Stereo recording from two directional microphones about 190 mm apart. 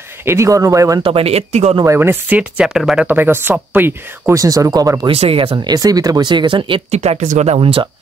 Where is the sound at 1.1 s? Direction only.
30° right (ahead or behind).